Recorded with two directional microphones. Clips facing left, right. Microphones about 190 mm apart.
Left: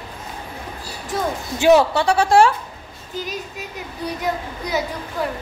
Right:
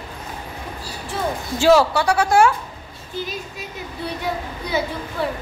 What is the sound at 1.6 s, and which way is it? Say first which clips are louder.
Speech: left 1 dB; 20° left (ahead or behind).